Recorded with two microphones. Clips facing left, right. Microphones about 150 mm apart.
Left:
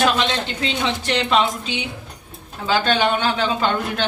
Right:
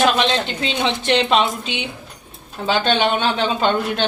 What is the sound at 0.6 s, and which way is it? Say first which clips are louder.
A woman's voice: right 3 dB; 20° right (ahead or behind).